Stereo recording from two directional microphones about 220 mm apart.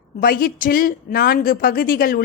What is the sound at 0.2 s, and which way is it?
Speech, 40° left (ahead or behind).